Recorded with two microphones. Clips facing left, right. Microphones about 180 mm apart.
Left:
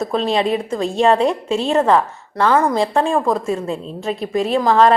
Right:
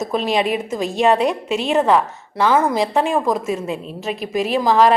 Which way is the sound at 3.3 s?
20° right (ahead or behind).